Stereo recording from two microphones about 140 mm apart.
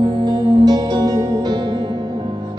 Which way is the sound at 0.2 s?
30° right (ahead or behind).